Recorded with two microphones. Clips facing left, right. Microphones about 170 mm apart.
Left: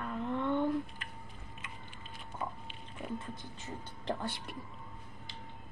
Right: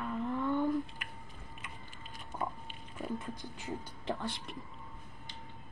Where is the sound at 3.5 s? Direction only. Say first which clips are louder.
Right 3 dB; 10° right (ahead or behind).